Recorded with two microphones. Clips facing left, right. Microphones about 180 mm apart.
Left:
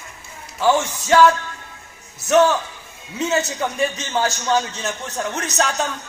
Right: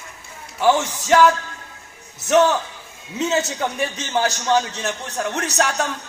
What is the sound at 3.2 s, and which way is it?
Speech, 20° right (ahead or behind).